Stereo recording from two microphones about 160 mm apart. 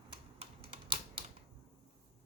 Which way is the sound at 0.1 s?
35° right (ahead or behind).